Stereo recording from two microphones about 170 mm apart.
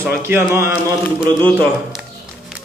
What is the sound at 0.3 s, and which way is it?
Speech, 15° right (ahead or behind).